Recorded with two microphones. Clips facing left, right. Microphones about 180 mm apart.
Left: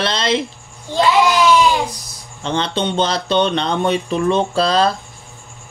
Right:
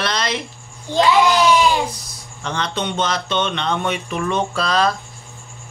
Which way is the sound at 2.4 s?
30° left (ahead or behind).